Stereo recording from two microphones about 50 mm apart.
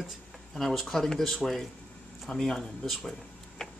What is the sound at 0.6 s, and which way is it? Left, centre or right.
Speech, centre.